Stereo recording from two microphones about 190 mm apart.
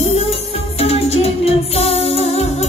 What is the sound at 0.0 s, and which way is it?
Music, 35° left (ahead or behind).